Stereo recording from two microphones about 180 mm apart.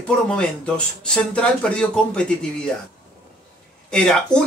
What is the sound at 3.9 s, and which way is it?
Speech, 5° left (ahead or behind).